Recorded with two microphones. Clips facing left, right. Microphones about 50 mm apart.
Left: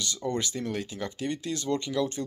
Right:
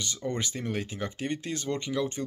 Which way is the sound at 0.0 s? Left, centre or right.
Right.